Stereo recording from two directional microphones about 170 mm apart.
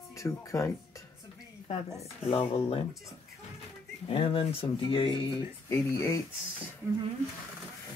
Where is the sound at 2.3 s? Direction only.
35° left (ahead or behind).